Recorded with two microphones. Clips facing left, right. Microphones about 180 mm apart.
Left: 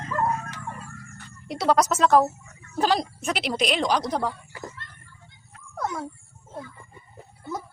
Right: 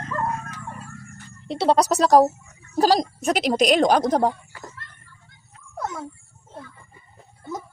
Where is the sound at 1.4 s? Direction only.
30° right (ahead or behind); by 4.3 s 45° right (ahead or behind).